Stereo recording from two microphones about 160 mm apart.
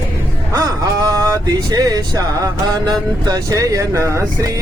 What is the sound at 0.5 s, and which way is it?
Vehicle, 20° right (ahead or behind).